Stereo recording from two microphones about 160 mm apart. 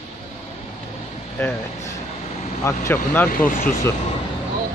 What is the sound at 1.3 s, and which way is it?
Speech, 15° left (ahead or behind).